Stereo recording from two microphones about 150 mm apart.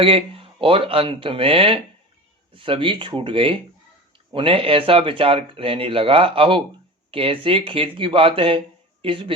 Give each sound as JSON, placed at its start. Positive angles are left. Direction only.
{"t": 0.0, "sound": "speech", "side_deg": -40}